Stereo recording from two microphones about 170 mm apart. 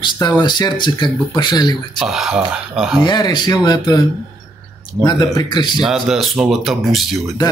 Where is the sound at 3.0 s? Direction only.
25° left (ahead or behind).